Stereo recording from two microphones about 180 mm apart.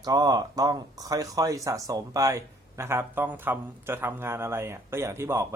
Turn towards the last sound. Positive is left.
turn(degrees=-15)  # may be behind; listen again after turning